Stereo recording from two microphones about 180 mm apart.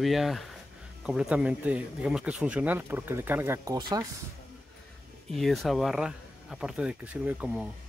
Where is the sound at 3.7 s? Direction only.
25° right (ahead or behind).